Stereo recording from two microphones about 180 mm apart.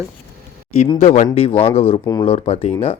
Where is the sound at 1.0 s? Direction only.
40° left (ahead or behind).